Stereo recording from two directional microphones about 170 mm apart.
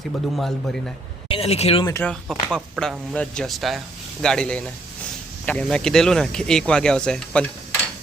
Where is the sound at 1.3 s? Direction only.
35° left (ahead or behind).